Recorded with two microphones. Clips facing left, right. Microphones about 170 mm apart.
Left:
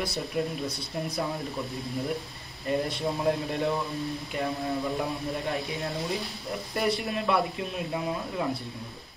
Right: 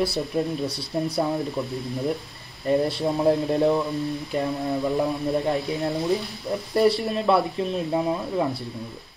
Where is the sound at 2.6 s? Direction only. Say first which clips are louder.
Right 6 dB; 35° right (ahead or behind).